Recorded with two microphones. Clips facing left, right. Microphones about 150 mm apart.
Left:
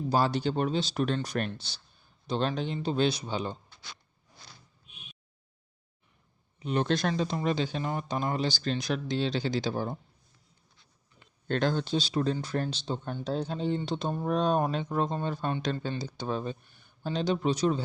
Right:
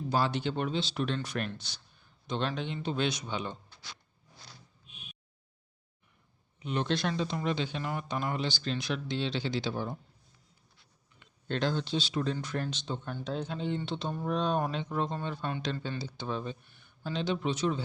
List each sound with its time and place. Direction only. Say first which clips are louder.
0.1 s speech: left 3 dB; 40° left (ahead or behind)
6.6 s speech: left 3 dB; 40° left (ahead or behind)
11.4 s speech: left 3 dB; 50° left (ahead or behind)